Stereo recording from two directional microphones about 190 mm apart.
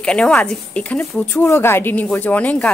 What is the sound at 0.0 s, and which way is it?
Speech, 5° left (ahead or behind).